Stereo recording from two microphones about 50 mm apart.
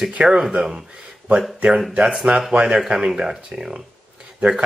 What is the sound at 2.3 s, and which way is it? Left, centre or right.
Speech, centre.